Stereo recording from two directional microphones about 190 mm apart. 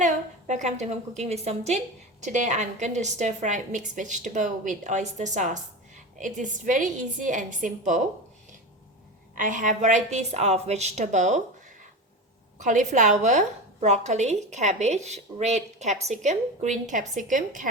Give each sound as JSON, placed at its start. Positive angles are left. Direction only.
{"t": 0.0, "sound": "a woman's voice", "side_deg": -40}
{"t": 9.3, "sound": "a woman's voice", "side_deg": -45}
{"t": 12.5, "sound": "a woman's voice", "side_deg": -40}